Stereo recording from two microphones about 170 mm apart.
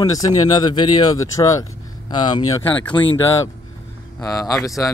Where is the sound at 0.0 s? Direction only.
20° left (ahead or behind).